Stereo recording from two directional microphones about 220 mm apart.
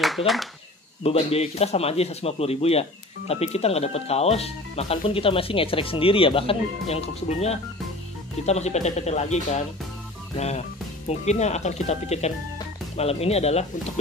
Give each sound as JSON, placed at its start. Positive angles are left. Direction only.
{"t": 0.2, "sound": "speech", "side_deg": 25}